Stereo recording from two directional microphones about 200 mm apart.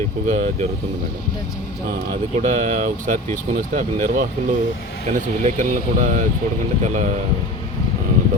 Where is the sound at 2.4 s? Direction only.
35° right (ahead or behind).